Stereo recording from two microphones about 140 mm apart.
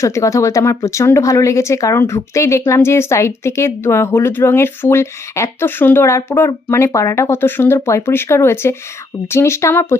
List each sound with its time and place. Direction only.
0.0 s speech: 20° left (ahead or behind)